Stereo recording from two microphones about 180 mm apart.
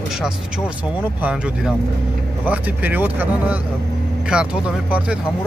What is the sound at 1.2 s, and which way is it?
Speech, 5° right (ahead or behind).